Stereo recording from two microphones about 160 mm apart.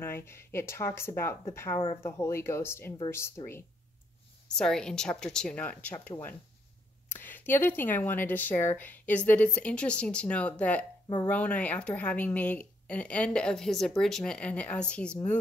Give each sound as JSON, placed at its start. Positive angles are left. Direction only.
{"t": 0.0, "sound": "a woman's voice", "side_deg": 15}
{"t": 4.5, "sound": "a woman's voice", "side_deg": 5}